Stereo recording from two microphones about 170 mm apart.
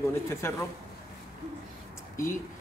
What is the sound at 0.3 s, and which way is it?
Speech, 15° left (ahead or behind).